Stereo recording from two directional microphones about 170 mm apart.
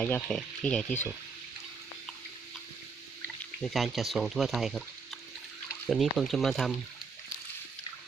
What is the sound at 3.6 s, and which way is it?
Speech, centre (ahead or behind).